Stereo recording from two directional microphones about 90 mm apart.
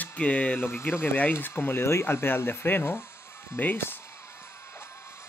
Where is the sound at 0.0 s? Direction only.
15° left (ahead or behind).